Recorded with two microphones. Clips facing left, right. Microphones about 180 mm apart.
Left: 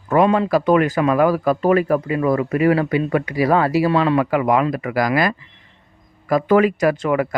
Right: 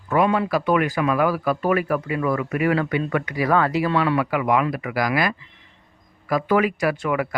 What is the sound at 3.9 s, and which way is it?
Speech, 40° left (ahead or behind).